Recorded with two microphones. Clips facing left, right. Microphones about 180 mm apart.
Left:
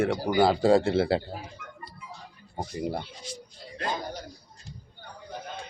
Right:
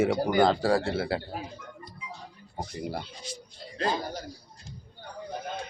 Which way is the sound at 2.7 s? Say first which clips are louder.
Left 4 dB; 20° left (ahead or behind).